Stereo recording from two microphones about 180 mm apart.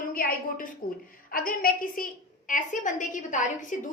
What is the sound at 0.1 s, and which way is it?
A woman's voice, 55° left (ahead or behind).